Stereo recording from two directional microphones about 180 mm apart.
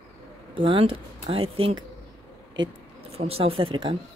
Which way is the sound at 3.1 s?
35° right (ahead or behind).